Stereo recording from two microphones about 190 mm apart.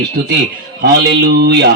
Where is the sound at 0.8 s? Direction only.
60° right (ahead or behind).